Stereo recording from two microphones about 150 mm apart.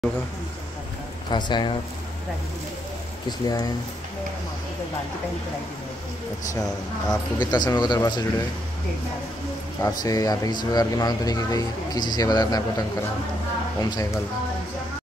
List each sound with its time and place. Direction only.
1.3 s speech: 30° left (ahead or behind)
3.3 s speech: 25° left (ahead or behind)
7.3 s speech: 30° left (ahead or behind)
9.8 s speech: 25° left (ahead or behind)